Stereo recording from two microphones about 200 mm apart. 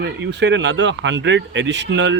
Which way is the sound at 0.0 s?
60° right (ahead or behind).